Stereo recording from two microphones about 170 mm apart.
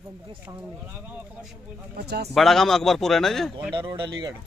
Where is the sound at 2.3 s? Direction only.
Centre (ahead or behind).